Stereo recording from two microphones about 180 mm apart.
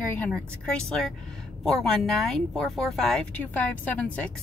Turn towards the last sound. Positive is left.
turn(degrees=10)  # may be behind; listen again after turning